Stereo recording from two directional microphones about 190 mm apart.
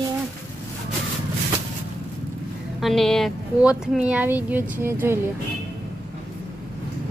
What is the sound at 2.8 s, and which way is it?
Speech, centre (ahead or behind).